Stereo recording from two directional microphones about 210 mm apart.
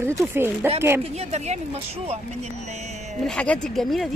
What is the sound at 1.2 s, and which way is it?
Speech, 30° right (ahead or behind).